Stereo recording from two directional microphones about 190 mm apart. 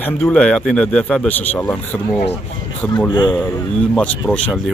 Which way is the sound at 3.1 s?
25° left (ahead or behind).